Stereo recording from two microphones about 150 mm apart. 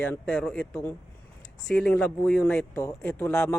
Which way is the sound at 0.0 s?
5° left (ahead or behind).